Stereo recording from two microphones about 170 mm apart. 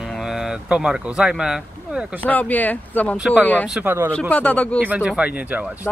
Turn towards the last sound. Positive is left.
turn(degrees=-10)  # may be behind; listen again after turning